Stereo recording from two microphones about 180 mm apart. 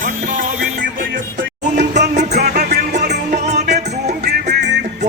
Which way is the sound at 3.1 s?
40° right (ahead or behind).